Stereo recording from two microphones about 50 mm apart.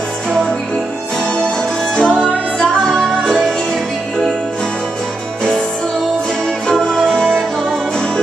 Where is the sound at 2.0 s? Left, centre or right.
Centre.